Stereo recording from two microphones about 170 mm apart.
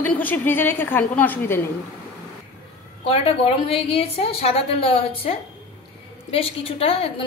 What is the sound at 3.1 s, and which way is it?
A woman's voice, 35° left (ahead or behind).